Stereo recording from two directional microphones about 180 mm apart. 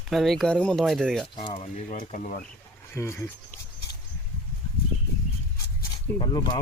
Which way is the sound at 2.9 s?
15° left (ahead or behind).